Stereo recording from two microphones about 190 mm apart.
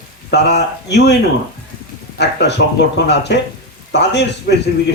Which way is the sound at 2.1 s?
65° left (ahead or behind).